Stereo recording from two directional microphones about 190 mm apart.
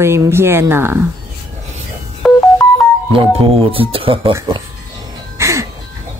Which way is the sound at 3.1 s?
25° right (ahead or behind).